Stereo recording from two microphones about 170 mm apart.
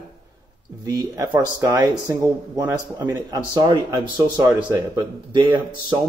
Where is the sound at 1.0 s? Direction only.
20° right (ahead or behind).